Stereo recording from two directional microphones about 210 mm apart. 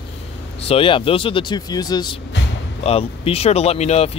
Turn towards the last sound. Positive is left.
turn(degrees=30)  # may be behind; listen again after turning